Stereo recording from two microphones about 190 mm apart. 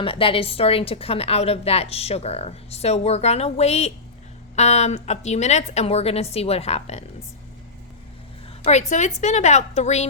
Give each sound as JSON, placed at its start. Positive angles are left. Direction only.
{"t": 0.0, "sound": "a woman's voice", "side_deg": 30}
{"t": 8.9, "sound": "a woman's voice", "side_deg": 40}